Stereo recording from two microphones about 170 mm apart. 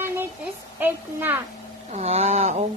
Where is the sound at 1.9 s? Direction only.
40° right (ahead or behind).